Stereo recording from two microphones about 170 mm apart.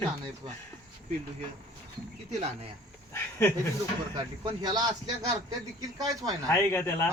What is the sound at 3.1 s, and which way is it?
Speech, 15° left (ahead or behind).